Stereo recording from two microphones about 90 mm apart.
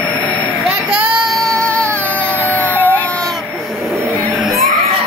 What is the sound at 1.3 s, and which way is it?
Baby cry, 5° left (ahead or behind).